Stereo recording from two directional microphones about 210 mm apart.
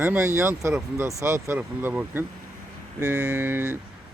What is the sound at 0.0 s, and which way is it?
Speech, 10° right (ahead or behind).